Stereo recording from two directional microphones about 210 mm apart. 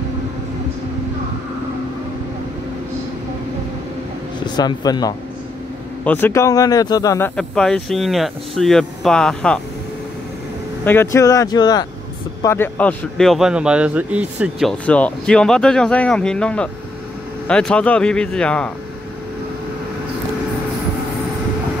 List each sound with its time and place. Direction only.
4.6 s a man's voice: 20° left (ahead or behind); by 9.6 s 5° left (ahead or behind)
10.9 s a man's voice: 10° left (ahead or behind)